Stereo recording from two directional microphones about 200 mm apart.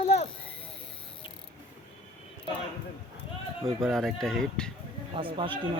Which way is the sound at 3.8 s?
Centre (ahead or behind).